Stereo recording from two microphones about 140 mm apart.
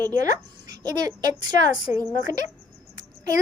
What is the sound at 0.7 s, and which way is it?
A woman's voice, 30° right (ahead or behind).